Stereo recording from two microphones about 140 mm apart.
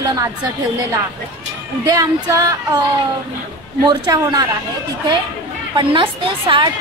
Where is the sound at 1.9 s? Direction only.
25° right (ahead or behind).